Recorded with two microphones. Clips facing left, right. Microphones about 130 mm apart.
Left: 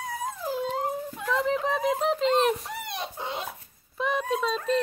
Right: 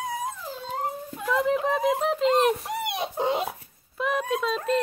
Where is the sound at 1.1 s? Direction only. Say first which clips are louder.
Right 4 dB; 5° right (ahead or behind).